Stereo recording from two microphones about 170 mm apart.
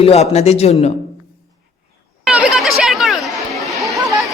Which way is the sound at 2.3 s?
5° right (ahead or behind).